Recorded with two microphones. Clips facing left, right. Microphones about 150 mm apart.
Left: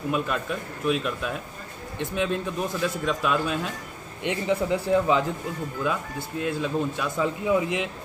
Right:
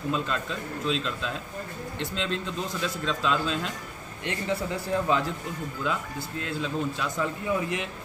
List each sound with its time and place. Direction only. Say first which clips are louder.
0.1 s a man's voice: left 3 dB; 15° left (ahead or behind)
6.4 s a man's voice: left 4 dB; 15° left (ahead or behind)